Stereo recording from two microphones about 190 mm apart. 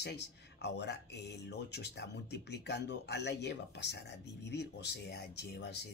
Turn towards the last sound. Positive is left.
turn(degrees=60)  # may be behind; listen again after turning